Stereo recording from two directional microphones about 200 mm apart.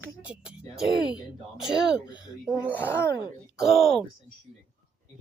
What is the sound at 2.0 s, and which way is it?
Speech, 20° left (ahead or behind).